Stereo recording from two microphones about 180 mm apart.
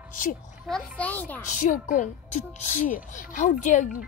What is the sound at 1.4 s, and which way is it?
Speech, 45° left (ahead or behind).